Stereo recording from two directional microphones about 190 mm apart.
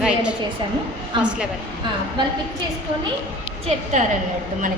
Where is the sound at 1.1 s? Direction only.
25° right (ahead or behind).